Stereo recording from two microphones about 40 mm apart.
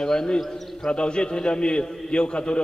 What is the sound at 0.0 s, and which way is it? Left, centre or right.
A man's voice, centre.